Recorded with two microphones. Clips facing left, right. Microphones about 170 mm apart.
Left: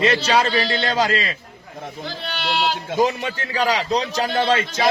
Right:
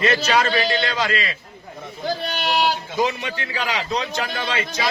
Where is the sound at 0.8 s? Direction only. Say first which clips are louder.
Left 3 dB; 40° left (ahead or behind).